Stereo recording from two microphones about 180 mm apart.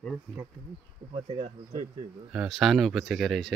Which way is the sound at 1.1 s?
30° right (ahead or behind).